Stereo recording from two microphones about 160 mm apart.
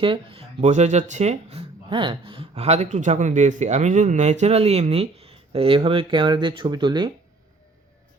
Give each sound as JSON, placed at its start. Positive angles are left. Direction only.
{"t": 0.0, "sound": "speech", "side_deg": -35}